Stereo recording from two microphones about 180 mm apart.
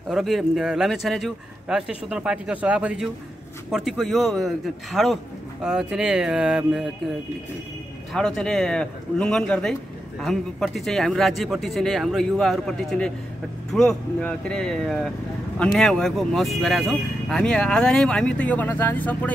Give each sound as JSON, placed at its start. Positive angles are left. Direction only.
{"t": 0.1, "sound": "speech", "side_deg": 0}
{"t": 8.1, "sound": "speech", "side_deg": 0}